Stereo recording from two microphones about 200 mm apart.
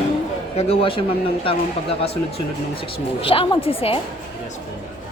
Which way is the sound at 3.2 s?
25° left (ahead or behind).